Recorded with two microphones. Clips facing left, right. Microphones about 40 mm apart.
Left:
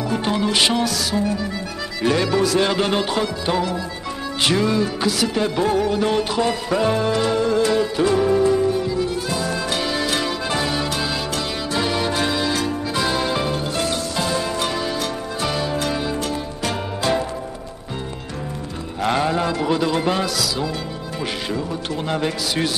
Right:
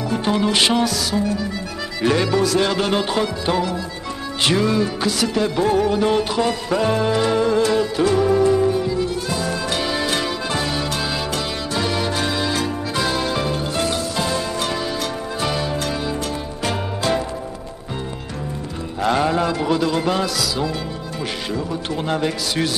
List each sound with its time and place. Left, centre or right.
0.1 s music: centre
1.1 s music: centre
2.0 s speech: centre
2.3 s music: centre
19.1 s music: centre
22.0 s music: centre